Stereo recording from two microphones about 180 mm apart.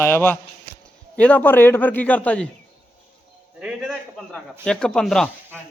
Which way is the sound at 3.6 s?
5° right (ahead or behind).